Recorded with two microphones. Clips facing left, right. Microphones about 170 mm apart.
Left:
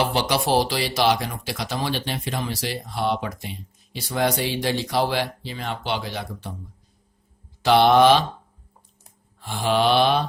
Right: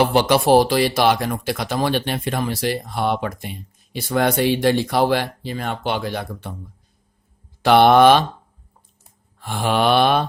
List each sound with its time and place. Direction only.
0.0 s speech: 55° right (ahead or behind)
7.6 s mantra: 55° right (ahead or behind)
9.4 s mantra: 55° right (ahead or behind)